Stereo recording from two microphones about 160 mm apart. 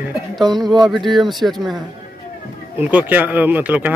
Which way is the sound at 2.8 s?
10° right (ahead or behind).